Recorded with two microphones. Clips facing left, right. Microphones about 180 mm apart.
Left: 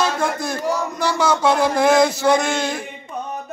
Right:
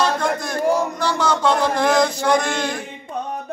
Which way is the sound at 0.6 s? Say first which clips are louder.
Right 6 dB; 55° right (ahead or behind).